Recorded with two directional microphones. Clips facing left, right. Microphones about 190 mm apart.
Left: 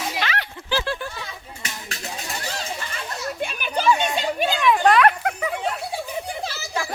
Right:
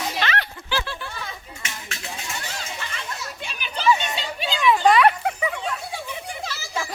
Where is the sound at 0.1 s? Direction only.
10° left (ahead or behind).